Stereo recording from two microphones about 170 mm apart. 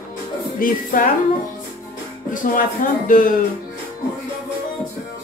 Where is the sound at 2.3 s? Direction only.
50° left (ahead or behind).